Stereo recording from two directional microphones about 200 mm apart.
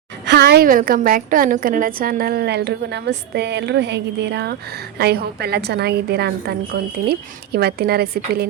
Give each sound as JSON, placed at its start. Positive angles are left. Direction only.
{"t": 0.3, "sound": "a woman's voice", "side_deg": -55}